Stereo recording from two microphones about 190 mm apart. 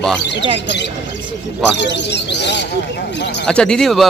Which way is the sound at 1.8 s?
70° left (ahead or behind).